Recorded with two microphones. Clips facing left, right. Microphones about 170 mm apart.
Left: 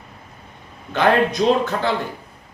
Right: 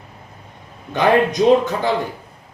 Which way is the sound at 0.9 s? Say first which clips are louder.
Right 2 dB; 15° right (ahead or behind).